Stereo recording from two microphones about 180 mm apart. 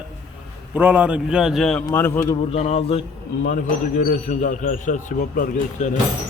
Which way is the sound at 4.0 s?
45° left (ahead or behind).